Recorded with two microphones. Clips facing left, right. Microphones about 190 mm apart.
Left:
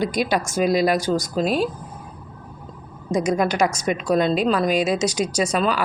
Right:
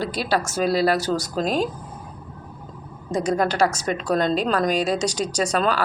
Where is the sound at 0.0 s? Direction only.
15° left (ahead or behind).